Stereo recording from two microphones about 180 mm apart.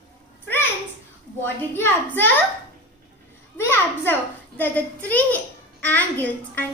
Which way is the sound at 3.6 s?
10° left (ahead or behind).